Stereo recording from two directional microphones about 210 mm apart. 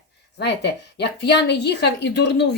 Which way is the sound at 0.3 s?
55° left (ahead or behind).